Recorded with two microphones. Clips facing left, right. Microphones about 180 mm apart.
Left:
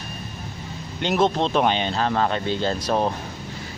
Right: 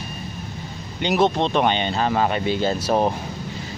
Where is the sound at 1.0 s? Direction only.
Centre (ahead or behind).